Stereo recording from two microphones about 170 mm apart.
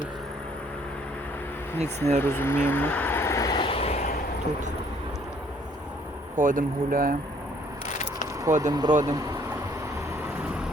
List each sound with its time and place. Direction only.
1.8 s speech: 40° right (ahead or behind)
2.2 s vehicle: 15° left (ahead or behind); by 4.0 s 35° left (ahead or behind)
6.3 s speech: 50° right (ahead or behind)
8.4 s speech: 20° right (ahead or behind)